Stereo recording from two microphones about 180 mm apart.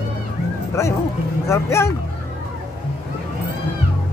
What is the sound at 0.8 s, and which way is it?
Speech, 15° left (ahead or behind).